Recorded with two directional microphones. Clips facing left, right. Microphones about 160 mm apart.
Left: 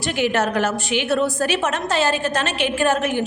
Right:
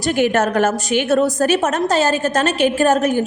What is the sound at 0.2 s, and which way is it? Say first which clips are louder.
A woman's voice: right 3 dB; 50° right (ahead or behind).